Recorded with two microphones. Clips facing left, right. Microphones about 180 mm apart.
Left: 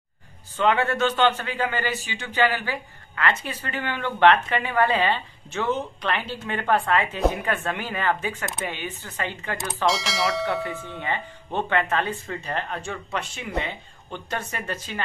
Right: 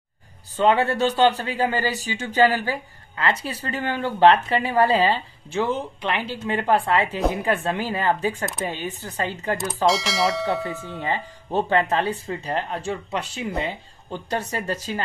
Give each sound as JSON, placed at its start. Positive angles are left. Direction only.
{"t": 0.6, "sound": "speech", "side_deg": -35}
{"t": 9.8, "sound": "speech", "side_deg": 0}
{"t": 11.0, "sound": "speech", "side_deg": -35}